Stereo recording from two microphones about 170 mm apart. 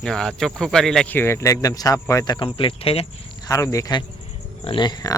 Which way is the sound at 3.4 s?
20° left (ahead or behind).